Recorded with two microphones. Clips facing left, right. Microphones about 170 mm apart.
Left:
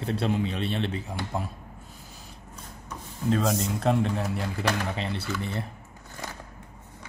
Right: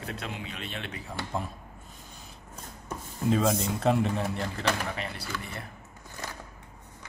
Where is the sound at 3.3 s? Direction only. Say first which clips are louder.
Even; centre (ahead or behind).